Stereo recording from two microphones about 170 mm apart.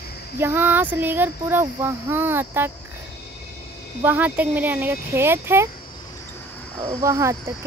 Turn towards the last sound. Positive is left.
turn(degrees=-20)  # may be behind; listen again after turning